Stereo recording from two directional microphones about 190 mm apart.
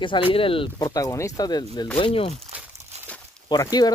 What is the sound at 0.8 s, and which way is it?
Speech, 15° left (ahead or behind).